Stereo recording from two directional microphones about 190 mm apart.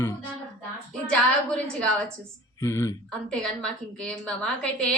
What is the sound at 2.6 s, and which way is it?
Speech, 15° left (ahead or behind).